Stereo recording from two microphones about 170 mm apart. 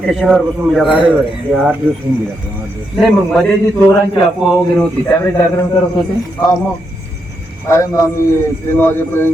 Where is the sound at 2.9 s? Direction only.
Centre (ahead or behind).